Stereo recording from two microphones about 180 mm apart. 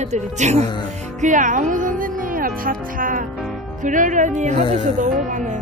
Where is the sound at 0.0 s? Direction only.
40° right (ahead or behind).